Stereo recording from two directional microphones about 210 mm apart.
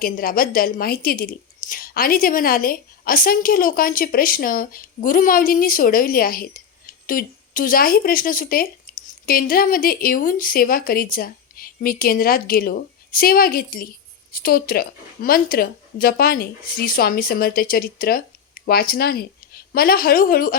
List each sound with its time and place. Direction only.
0.0 s a woman's voice: 45° left (ahead or behind)